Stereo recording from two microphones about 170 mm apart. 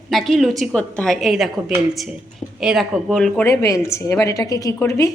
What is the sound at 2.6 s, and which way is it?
Speech, 5° right (ahead or behind).